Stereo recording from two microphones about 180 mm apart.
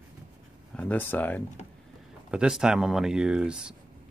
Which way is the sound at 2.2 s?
5° right (ahead or behind).